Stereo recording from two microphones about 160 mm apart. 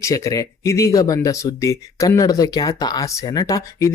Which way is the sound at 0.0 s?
20° left (ahead or behind).